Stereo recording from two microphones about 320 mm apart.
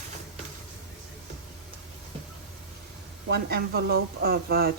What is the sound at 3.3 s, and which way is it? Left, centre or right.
Speech, right.